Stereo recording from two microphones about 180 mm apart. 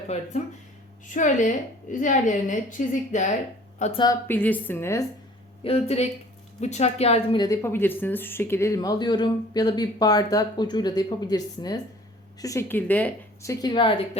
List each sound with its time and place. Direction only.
0.1 s a woman's voice: 35° left (ahead or behind)
4.0 s speech: 15° left (ahead or behind)
5.6 s a woman's voice: 35° left (ahead or behind)
7.4 s speech: 15° left (ahead or behind)